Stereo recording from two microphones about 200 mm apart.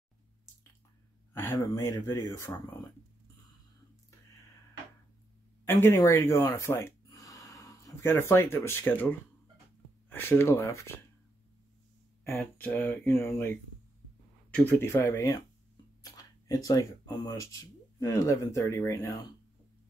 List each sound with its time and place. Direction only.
1.3 s speech: 10° left (ahead or behind)
5.7 s speech: 10° left (ahead or behind)
12.3 s speech: 10° left (ahead or behind)